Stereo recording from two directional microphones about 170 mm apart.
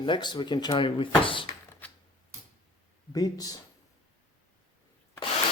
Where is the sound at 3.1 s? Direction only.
20° left (ahead or behind).